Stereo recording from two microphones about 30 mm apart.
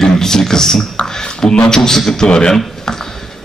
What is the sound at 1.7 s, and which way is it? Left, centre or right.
Speech, centre.